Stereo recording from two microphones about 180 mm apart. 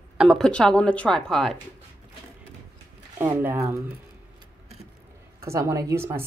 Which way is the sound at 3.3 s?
15° right (ahead or behind).